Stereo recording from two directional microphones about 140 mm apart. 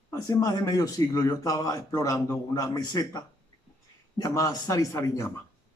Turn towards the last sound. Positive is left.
turn(degrees=20)  # may be behind; listen again after turning